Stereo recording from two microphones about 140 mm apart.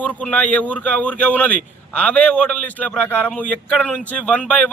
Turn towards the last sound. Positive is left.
turn(degrees=10)  # may be behind; listen again after turning